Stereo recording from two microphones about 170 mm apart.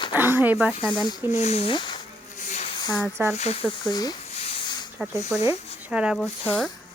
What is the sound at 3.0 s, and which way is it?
Speech, 10° right (ahead or behind).